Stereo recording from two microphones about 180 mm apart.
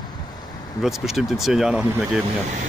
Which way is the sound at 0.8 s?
Centre (ahead or behind).